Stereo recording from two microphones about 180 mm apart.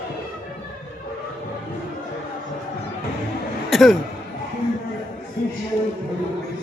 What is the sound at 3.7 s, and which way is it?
Speech, centre (ahead or behind).